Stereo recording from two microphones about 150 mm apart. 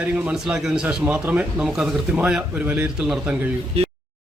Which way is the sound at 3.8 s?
40° right (ahead or behind).